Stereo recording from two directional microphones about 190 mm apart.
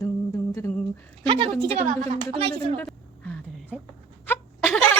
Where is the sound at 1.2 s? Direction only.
25° right (ahead or behind).